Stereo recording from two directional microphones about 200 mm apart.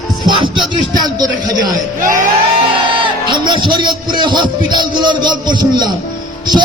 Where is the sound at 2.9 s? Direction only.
25° right (ahead or behind).